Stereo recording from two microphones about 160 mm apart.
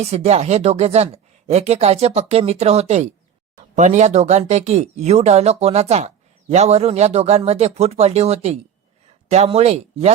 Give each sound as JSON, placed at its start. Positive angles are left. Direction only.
{"t": 0.0, "sound": "speech", "side_deg": -40}